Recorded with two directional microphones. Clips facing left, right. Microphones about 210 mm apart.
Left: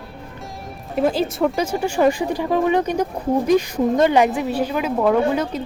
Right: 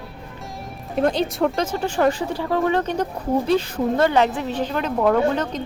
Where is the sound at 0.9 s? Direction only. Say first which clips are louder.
Left 1 dB; 5° left (ahead or behind).